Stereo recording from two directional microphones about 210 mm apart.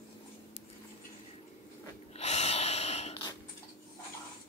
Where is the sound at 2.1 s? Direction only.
30° left (ahead or behind).